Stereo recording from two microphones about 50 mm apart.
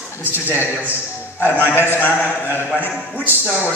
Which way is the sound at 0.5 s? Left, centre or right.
Right.